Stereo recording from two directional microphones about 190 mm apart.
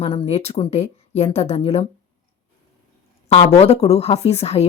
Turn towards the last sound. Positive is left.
turn(degrees=35)  # may be behind; listen again after turning